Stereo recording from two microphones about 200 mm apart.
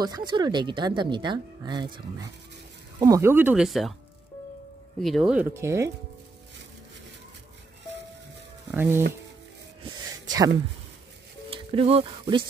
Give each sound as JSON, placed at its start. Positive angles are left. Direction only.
{"t": 0.0, "sound": "speech", "side_deg": -20}
{"t": 3.0, "sound": "speech", "side_deg": -15}
{"t": 5.0, "sound": "speech", "side_deg": 0}
{"t": 8.7, "sound": "speech", "side_deg": -10}
{"t": 9.8, "sound": "a sound", "side_deg": -20}
{"t": 11.5, "sound": "speech", "side_deg": -30}